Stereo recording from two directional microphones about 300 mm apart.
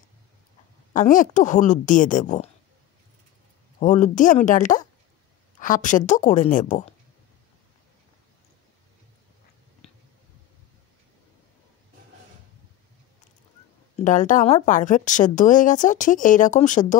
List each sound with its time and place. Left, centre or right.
0.9 s a woman's voice: left
3.8 s a woman's voice: left
14.0 s a woman's voice: left